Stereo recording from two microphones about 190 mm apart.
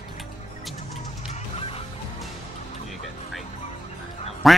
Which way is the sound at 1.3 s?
30° left (ahead or behind).